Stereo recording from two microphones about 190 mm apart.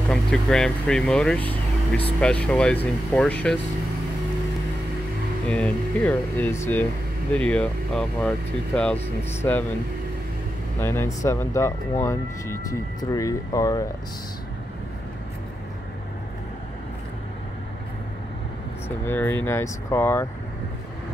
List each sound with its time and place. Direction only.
0.1 s speech: 5° left (ahead or behind)
5.5 s speech: 5° left (ahead or behind)
10.8 s speech: 10° left (ahead or behind)
18.9 s speech: 10° left (ahead or behind)